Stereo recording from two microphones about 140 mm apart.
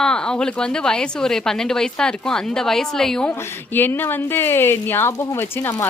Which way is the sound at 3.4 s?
15° left (ahead or behind).